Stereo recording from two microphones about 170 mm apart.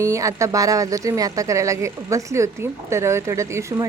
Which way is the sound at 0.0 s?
20° right (ahead or behind).